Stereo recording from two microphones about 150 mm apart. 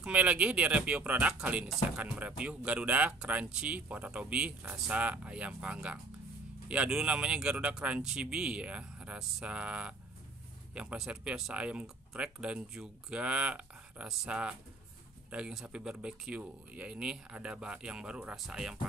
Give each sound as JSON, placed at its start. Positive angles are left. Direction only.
{"t": 0.0, "sound": "speech", "side_deg": -10}